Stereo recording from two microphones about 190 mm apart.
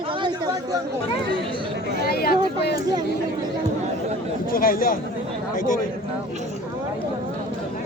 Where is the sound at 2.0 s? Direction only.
55° left (ahead or behind).